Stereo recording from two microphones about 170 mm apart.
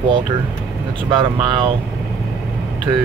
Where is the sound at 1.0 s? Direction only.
30° right (ahead or behind).